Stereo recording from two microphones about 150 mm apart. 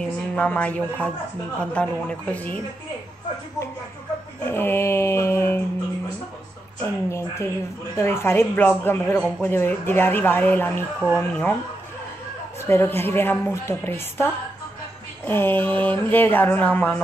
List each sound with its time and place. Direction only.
0.0 s speech: 10° left (ahead or behind)
4.5 s a sound: 15° left (ahead or behind)
6.8 s speech: 20° left (ahead or behind)
12.5 s speech: 15° left (ahead or behind)